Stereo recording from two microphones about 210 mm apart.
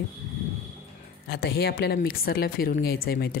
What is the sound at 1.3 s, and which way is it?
Speech, 50° left (ahead or behind).